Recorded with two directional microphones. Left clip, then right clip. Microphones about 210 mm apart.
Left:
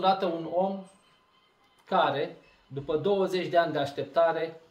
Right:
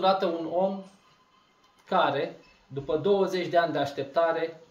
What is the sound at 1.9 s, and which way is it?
Speech, 5° left (ahead or behind).